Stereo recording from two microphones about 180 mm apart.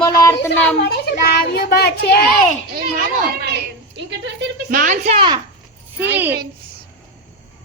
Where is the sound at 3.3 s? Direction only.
70° right (ahead or behind).